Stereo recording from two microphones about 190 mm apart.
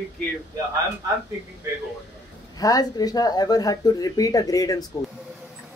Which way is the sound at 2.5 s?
20° left (ahead or behind).